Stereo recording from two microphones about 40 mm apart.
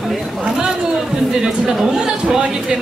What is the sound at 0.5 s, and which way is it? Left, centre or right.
A woman's voice, centre.